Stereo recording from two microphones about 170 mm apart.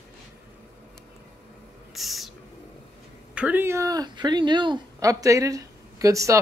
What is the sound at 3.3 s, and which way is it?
Speech, 10° right (ahead or behind).